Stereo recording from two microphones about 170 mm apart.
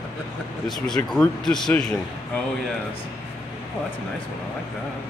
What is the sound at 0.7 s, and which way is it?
Speech, centre (ahead or behind).